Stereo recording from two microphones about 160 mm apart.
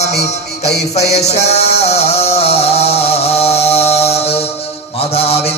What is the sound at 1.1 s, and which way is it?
Music, 45° left (ahead or behind).